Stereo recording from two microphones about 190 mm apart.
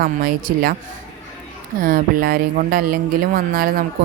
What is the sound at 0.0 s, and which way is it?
Speech, 50° right (ahead or behind).